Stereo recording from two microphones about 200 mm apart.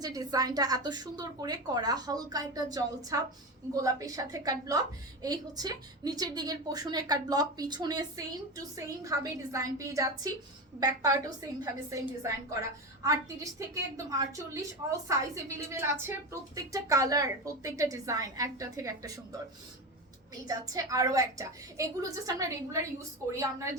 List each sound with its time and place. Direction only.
0.0 s a woman's voice: 20° right (ahead or behind)
20.5 s a woman's voice: 15° right (ahead or behind)